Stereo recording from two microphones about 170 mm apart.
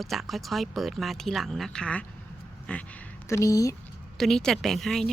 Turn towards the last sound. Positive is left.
turn(degrees=0)  # may be behind; listen again after turning